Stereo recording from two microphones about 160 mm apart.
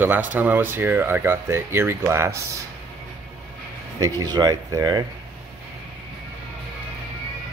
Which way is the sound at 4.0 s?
25° right (ahead or behind).